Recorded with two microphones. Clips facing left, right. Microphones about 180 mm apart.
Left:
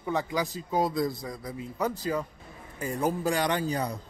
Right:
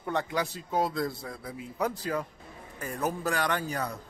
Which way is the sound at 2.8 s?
15° left (ahead or behind).